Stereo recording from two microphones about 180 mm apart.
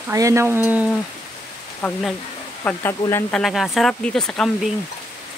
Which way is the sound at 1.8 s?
5° left (ahead or behind).